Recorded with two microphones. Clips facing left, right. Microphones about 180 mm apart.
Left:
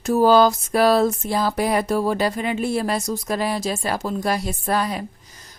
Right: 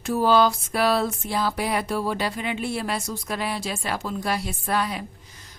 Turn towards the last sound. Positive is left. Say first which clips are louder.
# left 3 dB
turn(degrees=40)  # may be behind; listen again after turning